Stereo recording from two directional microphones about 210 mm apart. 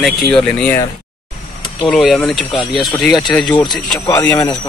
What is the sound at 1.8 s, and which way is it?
Speech, centre (ahead or behind).